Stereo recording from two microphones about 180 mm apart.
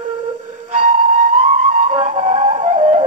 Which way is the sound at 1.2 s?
40° right (ahead or behind).